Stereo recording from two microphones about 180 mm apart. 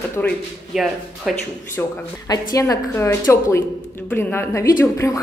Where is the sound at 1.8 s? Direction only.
20° left (ahead or behind).